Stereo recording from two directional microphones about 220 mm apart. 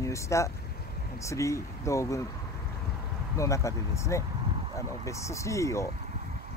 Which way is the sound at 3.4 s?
15° left (ahead or behind).